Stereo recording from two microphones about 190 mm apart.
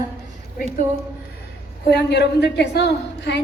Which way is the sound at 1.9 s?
60° left (ahead or behind).